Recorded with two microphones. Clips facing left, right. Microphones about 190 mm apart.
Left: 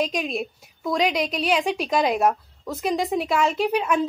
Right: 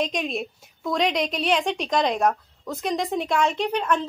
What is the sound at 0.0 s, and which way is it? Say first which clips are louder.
A woman's voice: left 1 dB; centre (ahead or behind).